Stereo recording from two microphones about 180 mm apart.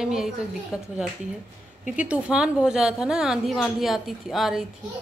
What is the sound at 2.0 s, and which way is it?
A woman's voice, 5° right (ahead or behind).